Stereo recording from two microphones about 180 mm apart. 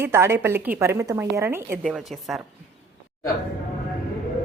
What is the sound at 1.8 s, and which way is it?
Speech, centre (ahead or behind).